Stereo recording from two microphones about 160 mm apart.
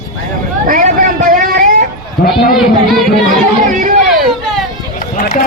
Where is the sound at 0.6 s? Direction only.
55° right (ahead or behind).